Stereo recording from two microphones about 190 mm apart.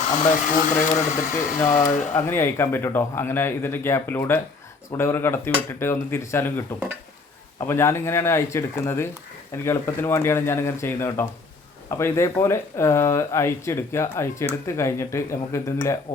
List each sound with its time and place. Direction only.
0.2 s speech: 40° left (ahead or behind)
2.1 s speech: 10° left (ahead or behind)